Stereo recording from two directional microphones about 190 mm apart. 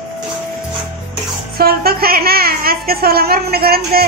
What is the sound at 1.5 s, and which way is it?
A woman's voice, 55° right (ahead or behind).